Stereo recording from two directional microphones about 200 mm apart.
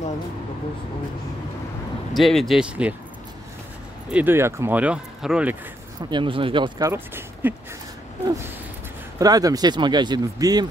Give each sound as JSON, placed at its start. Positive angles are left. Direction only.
{"t": 2.1, "sound": "speech", "side_deg": 0}
{"t": 4.1, "sound": "speech", "side_deg": -10}
{"t": 6.0, "sound": "speech", "side_deg": -25}
{"t": 6.9, "sound": "speech", "side_deg": -10}